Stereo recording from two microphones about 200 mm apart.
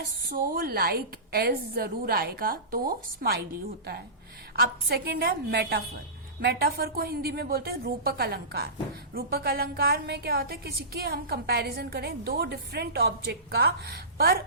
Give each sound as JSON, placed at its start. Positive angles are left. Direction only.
{"t": 0.3, "sound": "a woman's voice", "side_deg": -45}
{"t": 4.5, "sound": "a woman's voice", "side_deg": -50}